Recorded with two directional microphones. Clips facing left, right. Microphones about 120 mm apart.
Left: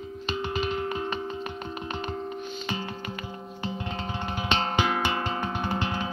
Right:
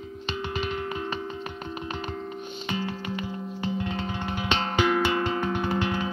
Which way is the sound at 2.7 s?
20° left (ahead or behind).